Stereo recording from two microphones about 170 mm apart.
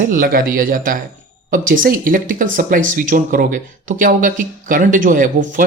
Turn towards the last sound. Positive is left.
turn(degrees=-50)  # may be behind; listen again after turning